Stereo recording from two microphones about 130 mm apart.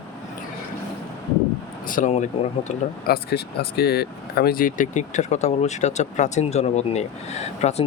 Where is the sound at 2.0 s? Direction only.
60° left (ahead or behind).